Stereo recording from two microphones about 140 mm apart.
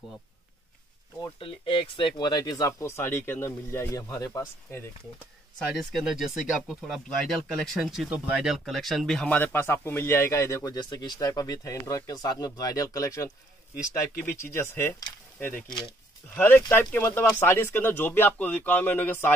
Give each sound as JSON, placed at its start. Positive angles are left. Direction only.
{"t": 1.2, "sound": "speech", "side_deg": 40}
{"t": 5.8, "sound": "speech", "side_deg": 0}